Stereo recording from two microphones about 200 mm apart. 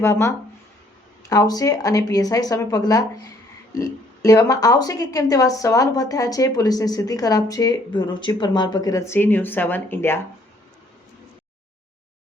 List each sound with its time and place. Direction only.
0.0 s speech: 15° left (ahead or behind)